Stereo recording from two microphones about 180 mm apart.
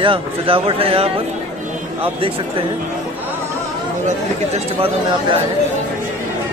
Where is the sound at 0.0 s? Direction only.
30° right (ahead or behind).